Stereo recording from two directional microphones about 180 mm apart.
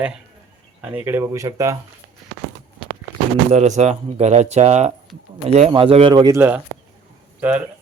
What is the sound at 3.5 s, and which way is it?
Speech, 40° right (ahead or behind).